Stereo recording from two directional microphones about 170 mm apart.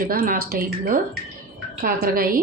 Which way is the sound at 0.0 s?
55° right (ahead or behind).